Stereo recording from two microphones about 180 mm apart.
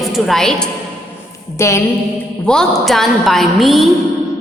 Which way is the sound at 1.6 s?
15° left (ahead or behind).